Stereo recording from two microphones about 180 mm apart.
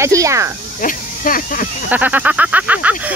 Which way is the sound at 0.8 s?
50° left (ahead or behind).